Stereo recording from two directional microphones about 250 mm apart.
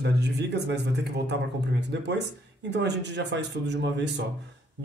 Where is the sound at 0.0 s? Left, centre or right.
Right.